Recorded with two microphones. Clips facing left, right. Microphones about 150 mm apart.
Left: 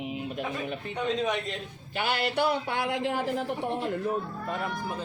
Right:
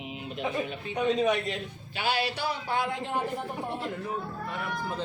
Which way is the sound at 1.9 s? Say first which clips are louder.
Left 2 dB; 55° left (ahead or behind).